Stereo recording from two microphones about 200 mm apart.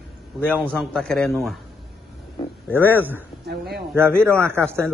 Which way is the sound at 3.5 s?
55° right (ahead or behind).